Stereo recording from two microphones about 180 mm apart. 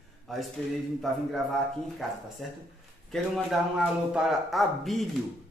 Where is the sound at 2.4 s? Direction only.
Centre (ahead or behind).